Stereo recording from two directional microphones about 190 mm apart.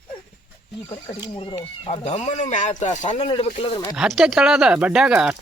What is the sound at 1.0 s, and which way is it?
Speech, 25° left (ahead or behind).